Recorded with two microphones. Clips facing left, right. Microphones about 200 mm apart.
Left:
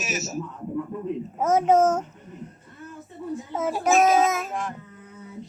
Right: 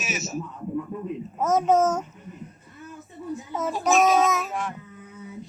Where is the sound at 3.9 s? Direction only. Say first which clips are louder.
Even; centre (ahead or behind).